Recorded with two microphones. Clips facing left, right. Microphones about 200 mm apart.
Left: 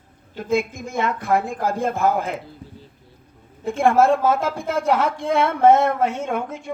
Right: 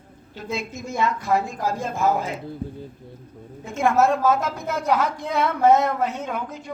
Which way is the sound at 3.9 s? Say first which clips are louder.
Even; 30° left (ahead or behind).